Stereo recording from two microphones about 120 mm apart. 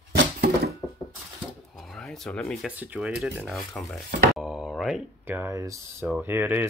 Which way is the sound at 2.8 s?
10° right (ahead or behind).